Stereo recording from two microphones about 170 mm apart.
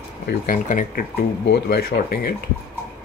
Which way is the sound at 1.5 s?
65° left (ahead or behind).